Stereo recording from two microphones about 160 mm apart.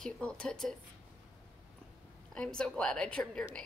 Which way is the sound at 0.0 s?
5° left (ahead or behind).